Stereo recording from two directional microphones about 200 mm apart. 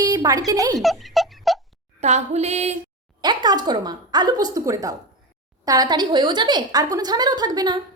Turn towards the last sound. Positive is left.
turn(degrees=-20)  # may be behind; listen again after turning